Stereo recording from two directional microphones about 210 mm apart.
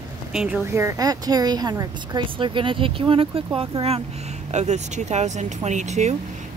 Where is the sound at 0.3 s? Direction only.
5° right (ahead or behind).